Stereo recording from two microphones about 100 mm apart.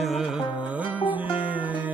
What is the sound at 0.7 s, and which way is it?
Music, 15° right (ahead or behind).